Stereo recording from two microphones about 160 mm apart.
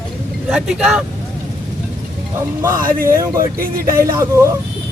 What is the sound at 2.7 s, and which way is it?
Speech, 60° right (ahead or behind).